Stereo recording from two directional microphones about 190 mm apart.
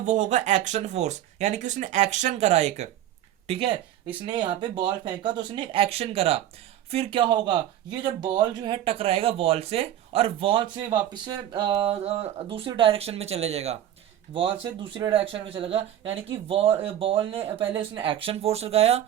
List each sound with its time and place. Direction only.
0.0 s a woman's voice: 40° right (ahead or behind)